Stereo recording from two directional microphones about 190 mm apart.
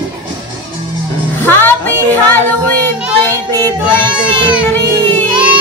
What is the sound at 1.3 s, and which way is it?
Music, 10° left (ahead or behind).